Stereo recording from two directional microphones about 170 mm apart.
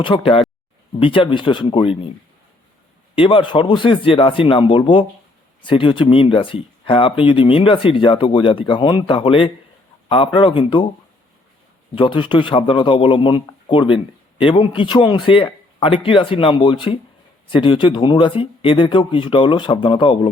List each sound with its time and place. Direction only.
0.0 s speech: 30° left (ahead or behind)
3.2 s speech: 30° left (ahead or behind)
11.9 s speech: 30° left (ahead or behind)